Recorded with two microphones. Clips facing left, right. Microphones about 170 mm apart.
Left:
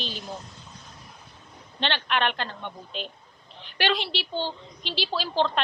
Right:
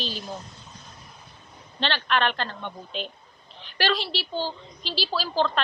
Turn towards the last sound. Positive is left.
turn(degrees=20)  # may be behind; listen again after turning